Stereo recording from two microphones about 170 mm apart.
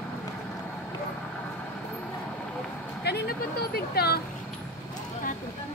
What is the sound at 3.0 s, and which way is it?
Speech, 70° left (ahead or behind).